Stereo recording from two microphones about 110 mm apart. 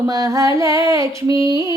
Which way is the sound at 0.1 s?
30° right (ahead or behind).